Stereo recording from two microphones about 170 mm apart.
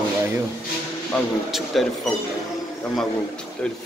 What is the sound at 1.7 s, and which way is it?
Speech, centre (ahead or behind).